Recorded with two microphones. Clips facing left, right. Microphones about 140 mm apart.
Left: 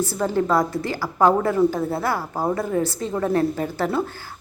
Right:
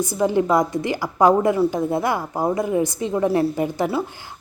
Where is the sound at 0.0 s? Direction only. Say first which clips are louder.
Right 3 dB; 15° right (ahead or behind).